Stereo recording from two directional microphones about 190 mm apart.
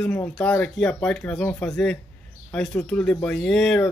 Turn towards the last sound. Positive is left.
turn(degrees=5)  # may be behind; listen again after turning